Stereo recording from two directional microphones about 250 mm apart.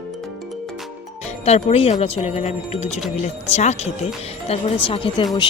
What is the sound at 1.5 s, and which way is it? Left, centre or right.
Speech, left.